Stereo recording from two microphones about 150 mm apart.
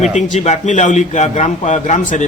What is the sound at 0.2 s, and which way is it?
A man's voice, 50° left (ahead or behind).